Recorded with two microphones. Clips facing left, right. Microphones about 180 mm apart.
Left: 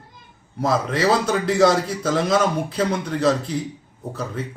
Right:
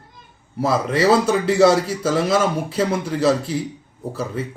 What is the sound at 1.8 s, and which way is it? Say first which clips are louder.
Speech: right 2 dB; 5° right (ahead or behind).